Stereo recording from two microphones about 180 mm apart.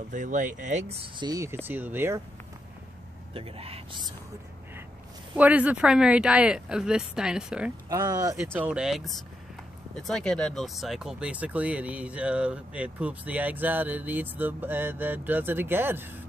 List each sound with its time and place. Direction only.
0.1 s speech: 45° right (ahead or behind); by 2.2 s 10° right (ahead or behind)
3.3 s speech: 30° right (ahead or behind)
5.3 s speech: 10° right (ahead or behind)
7.9 s speech: 20° right (ahead or behind)
8.5 s speech: 5° right (ahead or behind)